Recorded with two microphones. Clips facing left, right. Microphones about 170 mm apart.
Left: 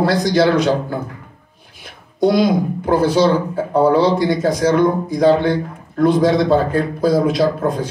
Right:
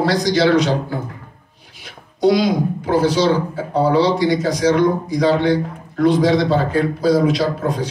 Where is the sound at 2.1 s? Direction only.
50° left (ahead or behind).